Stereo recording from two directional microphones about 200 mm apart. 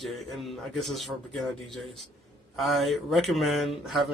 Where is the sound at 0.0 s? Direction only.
Centre (ahead or behind).